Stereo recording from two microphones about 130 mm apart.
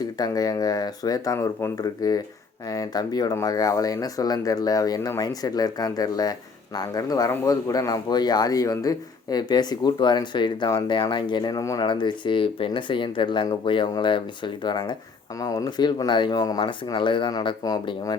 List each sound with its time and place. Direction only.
0.0 s speech: 30° left (ahead or behind)
11.8 s speech: 35° left (ahead or behind)